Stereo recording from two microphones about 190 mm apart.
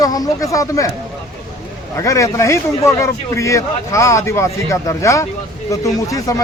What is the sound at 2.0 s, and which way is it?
A man's voice, 15° left (ahead or behind).